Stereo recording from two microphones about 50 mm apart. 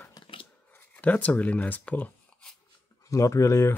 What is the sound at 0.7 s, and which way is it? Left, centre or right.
Speech, left.